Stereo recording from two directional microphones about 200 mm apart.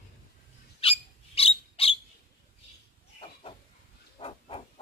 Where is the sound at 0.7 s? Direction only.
30° left (ahead or behind).